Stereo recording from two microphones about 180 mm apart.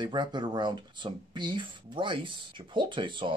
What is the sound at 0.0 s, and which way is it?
Speech, 25° right (ahead or behind).